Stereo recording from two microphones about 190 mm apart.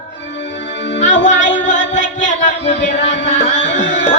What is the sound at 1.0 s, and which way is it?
Music, 75° left (ahead or behind).